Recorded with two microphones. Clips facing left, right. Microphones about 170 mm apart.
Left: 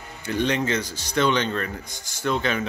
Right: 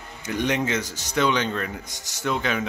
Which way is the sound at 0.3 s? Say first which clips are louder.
Left 1 dB; 15° right (ahead or behind).